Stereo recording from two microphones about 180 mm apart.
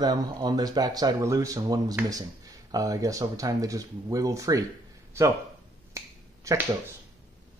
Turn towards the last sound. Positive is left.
turn(degrees=-15)  # may be behind; listen again after turning